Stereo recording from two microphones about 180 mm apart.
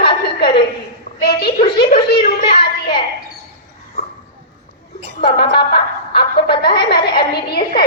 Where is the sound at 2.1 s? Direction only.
25° left (ahead or behind).